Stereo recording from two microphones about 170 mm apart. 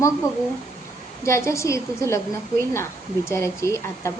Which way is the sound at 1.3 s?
15° left (ahead or behind).